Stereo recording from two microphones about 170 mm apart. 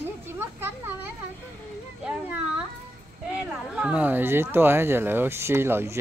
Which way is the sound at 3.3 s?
5° right (ahead or behind).